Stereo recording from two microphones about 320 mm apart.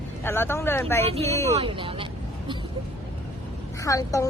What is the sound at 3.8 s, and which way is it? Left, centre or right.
Speech, centre.